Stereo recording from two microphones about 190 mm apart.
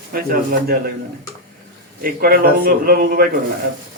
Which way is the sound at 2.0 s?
50° right (ahead or behind).